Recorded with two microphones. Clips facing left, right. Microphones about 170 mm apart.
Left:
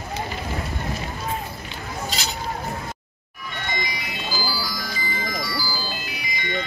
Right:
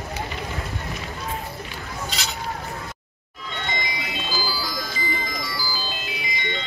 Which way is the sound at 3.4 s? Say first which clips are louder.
Even; 20° right (ahead or behind).